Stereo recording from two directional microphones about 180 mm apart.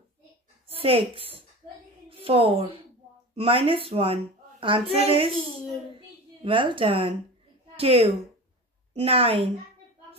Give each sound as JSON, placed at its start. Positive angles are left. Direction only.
{"t": 0.7, "sound": "a woman's voice", "side_deg": -30}